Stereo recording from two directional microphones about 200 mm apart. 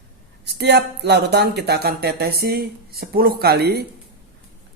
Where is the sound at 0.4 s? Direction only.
55° right (ahead or behind).